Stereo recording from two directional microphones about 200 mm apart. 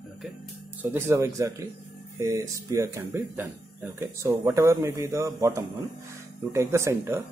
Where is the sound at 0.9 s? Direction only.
15° right (ahead or behind).